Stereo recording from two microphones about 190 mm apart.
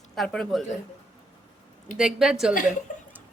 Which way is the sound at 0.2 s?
Centre (ahead or behind).